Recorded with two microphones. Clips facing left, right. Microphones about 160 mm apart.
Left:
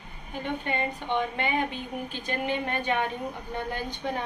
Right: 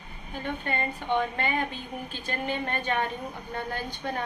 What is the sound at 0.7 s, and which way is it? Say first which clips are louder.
Speech: left 1 dB; 15° left (ahead or behind).